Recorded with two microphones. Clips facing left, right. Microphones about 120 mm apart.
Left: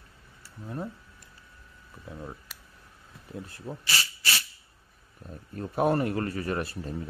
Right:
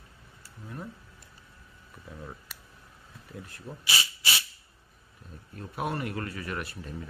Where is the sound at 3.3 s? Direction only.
30° left (ahead or behind).